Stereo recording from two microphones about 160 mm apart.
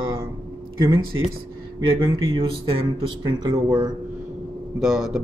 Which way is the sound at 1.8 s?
35° right (ahead or behind).